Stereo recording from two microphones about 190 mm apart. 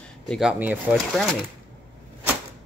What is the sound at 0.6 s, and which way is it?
Speech, 10° right (ahead or behind).